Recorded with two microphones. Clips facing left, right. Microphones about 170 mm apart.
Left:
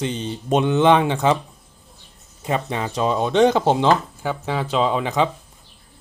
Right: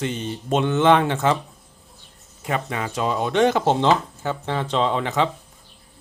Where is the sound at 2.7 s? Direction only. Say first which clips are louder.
Left 3 dB; 25° left (ahead or behind).